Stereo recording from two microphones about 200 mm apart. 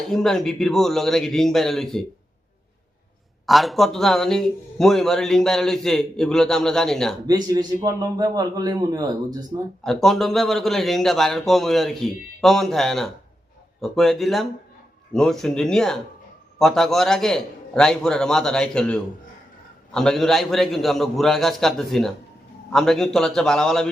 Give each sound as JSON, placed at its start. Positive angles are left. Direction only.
{"t": 0.1, "sound": "a man's voice", "side_deg": 0}
{"t": 3.4, "sound": "a man's voice", "side_deg": 0}
{"t": 7.3, "sound": "a man's voice", "side_deg": -20}
{"t": 9.8, "sound": "a man's voice", "side_deg": 0}